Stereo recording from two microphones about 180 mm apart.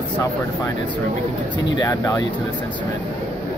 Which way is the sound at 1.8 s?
20° left (ahead or behind).